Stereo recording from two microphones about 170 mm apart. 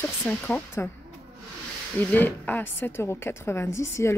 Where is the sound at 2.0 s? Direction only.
10° left (ahead or behind).